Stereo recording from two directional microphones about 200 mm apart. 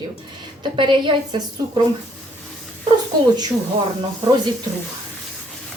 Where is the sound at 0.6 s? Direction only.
25° right (ahead or behind).